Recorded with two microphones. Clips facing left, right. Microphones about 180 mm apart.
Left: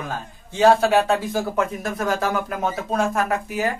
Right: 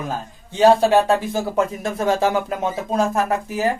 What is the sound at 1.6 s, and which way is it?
Speech, 25° right (ahead or behind).